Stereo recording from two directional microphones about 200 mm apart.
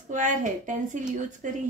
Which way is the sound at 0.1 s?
40° right (ahead or behind).